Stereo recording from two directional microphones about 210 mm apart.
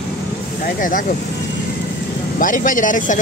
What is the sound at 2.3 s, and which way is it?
Speech, 40° left (ahead or behind).